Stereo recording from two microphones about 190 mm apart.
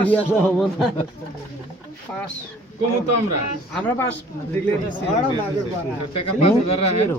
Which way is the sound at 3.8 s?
10° left (ahead or behind).